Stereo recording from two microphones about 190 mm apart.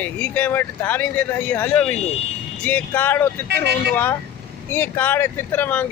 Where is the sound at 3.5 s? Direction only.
60° right (ahead or behind).